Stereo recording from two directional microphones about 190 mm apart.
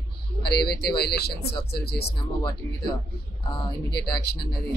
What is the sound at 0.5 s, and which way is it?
Speech, 55° left (ahead or behind).